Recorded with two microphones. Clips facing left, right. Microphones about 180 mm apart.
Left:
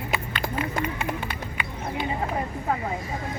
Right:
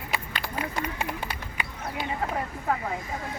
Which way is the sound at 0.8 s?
35° right (ahead or behind).